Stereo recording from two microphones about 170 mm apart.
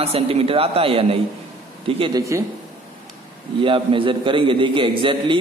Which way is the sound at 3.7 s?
30° right (ahead or behind).